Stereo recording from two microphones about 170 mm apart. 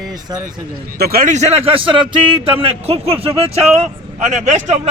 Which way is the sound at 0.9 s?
65° right (ahead or behind).